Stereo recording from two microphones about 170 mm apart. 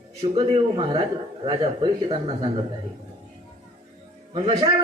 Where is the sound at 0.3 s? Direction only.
25° right (ahead or behind).